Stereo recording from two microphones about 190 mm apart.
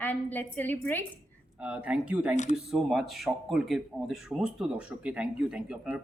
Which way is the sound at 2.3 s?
40° left (ahead or behind).